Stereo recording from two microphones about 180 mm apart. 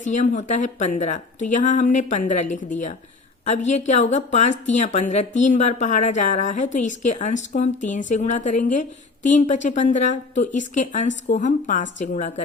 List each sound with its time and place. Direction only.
0.0 s a woman's voice: 45° left (ahead or behind)